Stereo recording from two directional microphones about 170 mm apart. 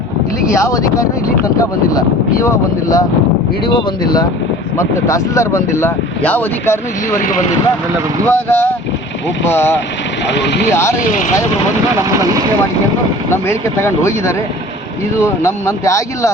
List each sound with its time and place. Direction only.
0.5 s speech: 20° left (ahead or behind)
8.3 s speech: 10° left (ahead or behind)
10.2 s speech: 90° left
13.3 s speech: 15° left (ahead or behind)